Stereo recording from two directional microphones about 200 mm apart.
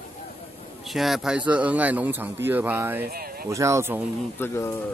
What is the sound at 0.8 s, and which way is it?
Speech, centre (ahead or behind).